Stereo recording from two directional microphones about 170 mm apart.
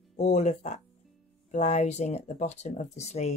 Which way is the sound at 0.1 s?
45° left (ahead or behind).